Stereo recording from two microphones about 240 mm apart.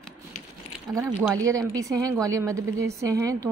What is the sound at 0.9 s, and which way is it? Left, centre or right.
A woman's voice, centre.